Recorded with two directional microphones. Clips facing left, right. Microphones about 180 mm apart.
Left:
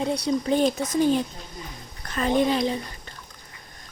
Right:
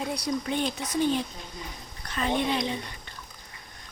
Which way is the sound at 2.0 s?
45° left (ahead or behind).